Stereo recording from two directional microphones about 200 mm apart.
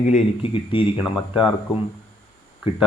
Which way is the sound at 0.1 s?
25° left (ahead or behind).